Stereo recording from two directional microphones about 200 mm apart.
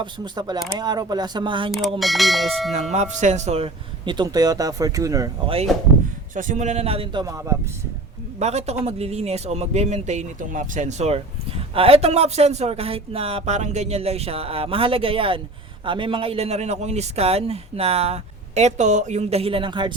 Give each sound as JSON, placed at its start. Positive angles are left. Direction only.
{"t": 0.0, "sound": "speech", "side_deg": -20}
{"t": 1.7, "sound": "speech", "side_deg": 0}
{"t": 2.9, "sound": "speech", "side_deg": -35}
{"t": 6.3, "sound": "speech", "side_deg": -40}
{"t": 8.4, "sound": "speech", "side_deg": -30}